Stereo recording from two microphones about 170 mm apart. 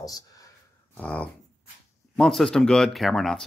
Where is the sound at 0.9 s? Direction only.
10° left (ahead or behind).